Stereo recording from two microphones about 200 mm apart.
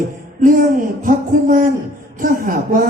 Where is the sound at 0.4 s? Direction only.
40° right (ahead or behind).